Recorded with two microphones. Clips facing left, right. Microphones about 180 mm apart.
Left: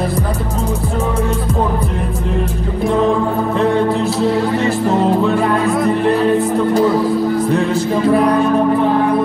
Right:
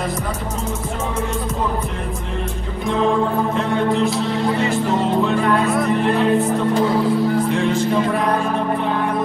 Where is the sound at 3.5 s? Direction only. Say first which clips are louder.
Left 6 dB; 35° left (ahead or behind).